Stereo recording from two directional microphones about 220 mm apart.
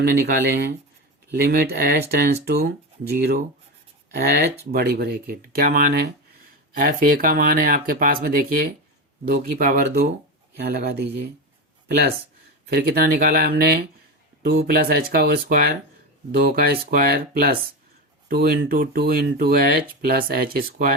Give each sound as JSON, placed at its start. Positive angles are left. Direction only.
{"t": 0.0, "sound": "speech", "side_deg": -45}
{"t": 12.7, "sound": "speech", "side_deg": -40}